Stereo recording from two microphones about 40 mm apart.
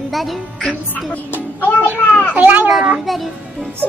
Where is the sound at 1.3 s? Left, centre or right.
Left.